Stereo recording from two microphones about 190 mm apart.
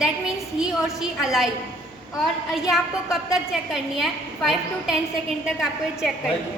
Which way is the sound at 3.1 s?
Centre (ahead or behind).